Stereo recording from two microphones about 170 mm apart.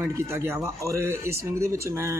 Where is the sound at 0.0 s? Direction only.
15° right (ahead or behind).